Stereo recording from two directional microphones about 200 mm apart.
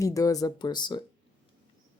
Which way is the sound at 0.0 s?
15° left (ahead or behind).